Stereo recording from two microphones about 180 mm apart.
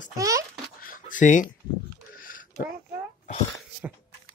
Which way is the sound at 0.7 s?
50° left (ahead or behind).